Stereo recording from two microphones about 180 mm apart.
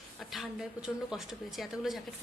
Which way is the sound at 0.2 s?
Centre (ahead or behind).